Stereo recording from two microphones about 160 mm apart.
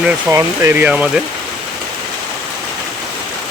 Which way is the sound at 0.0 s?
15° right (ahead or behind).